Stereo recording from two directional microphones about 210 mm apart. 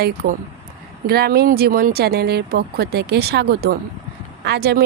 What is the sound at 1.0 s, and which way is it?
Speech, 50° right (ahead or behind).